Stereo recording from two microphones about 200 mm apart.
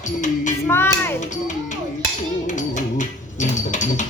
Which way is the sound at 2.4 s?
40° left (ahead or behind).